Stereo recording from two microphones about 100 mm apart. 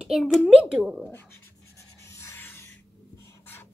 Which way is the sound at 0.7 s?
10° right (ahead or behind).